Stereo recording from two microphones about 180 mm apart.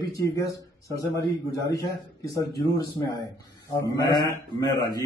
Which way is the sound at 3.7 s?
20° left (ahead or behind).